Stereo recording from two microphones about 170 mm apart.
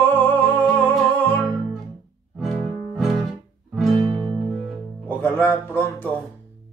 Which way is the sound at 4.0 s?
25° right (ahead or behind).